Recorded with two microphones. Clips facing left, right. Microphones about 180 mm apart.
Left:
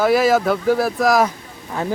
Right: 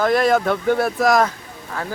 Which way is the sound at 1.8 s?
20° left (ahead or behind).